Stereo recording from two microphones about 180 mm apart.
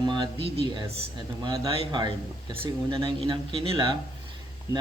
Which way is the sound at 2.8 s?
25° right (ahead or behind).